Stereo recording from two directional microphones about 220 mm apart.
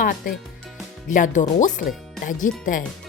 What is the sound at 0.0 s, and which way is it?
Speech, 40° left (ahead or behind).